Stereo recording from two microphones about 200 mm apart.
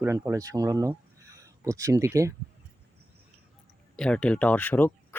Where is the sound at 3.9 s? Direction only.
5° left (ahead or behind).